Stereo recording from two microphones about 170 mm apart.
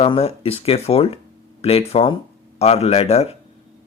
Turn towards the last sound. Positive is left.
turn(degrees=35)  # may be behind; listen again after turning